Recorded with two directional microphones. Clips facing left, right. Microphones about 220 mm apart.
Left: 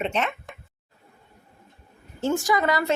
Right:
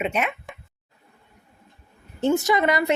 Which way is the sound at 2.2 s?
20° right (ahead or behind).